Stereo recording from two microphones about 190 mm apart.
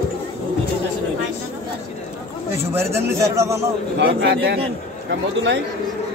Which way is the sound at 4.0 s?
65° right (ahead or behind).